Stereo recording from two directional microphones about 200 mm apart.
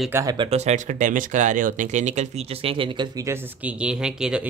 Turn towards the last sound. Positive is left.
turn(degrees=-5)  # may be behind; listen again after turning